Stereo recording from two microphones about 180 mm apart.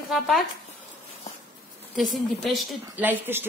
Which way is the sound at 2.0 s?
Centre (ahead or behind).